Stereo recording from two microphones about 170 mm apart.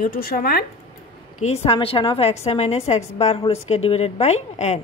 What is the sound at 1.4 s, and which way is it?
Speech, 35° left (ahead or behind).